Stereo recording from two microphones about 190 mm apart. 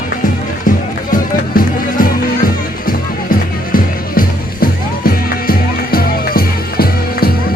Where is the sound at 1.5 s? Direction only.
50° left (ahead or behind).